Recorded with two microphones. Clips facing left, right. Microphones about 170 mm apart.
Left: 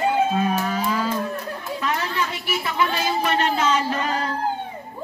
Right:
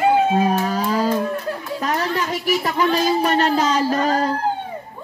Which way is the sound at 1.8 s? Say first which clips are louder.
Right 3 dB; 40° right (ahead or behind).